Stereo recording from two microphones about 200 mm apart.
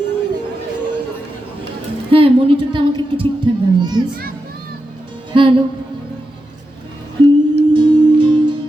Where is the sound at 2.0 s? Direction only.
25° right (ahead or behind).